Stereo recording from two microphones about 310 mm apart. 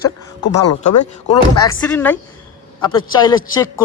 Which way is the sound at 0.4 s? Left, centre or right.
Left.